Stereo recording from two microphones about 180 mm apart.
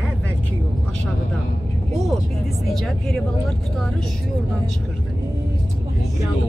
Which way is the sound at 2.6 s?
Centre (ahead or behind).